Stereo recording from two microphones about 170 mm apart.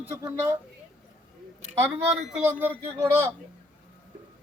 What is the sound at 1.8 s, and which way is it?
Speech, 15° right (ahead or behind).